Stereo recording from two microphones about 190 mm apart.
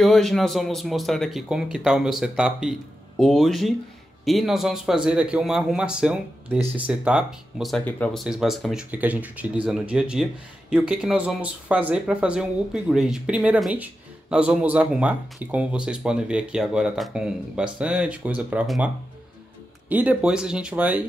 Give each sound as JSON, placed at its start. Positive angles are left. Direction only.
{"t": 0.0, "sound": "speech", "side_deg": 0}
{"t": 19.9, "sound": "speech", "side_deg": -10}